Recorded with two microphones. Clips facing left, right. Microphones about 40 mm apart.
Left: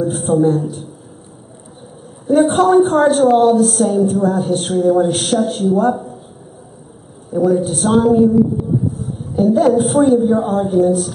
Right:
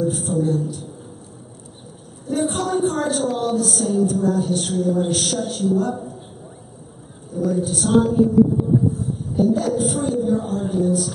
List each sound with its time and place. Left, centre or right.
0.0 s a woman's voice: left
2.2 s a woman's voice: left
7.3 s a woman's voice: left
9.4 s a woman's voice: left